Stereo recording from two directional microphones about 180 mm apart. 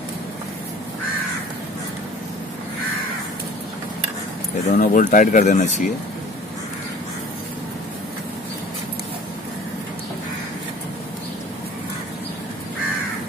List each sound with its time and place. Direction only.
4.6 s speech: 45° left (ahead or behind)